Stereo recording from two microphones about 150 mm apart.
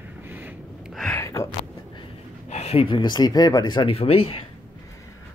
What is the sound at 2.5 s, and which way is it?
Speech, 45° left (ahead or behind).